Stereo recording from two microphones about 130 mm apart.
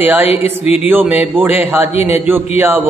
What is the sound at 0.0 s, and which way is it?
A man's voice, 15° right (ahead or behind).